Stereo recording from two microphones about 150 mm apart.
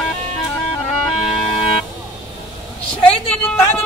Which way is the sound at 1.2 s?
Centre (ahead or behind).